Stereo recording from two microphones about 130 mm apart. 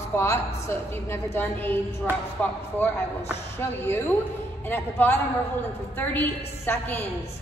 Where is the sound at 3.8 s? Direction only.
15° left (ahead or behind).